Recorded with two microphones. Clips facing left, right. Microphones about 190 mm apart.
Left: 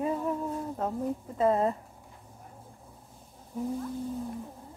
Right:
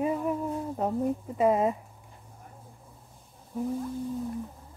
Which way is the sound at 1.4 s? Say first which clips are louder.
Right 1 dB; 10° right (ahead or behind).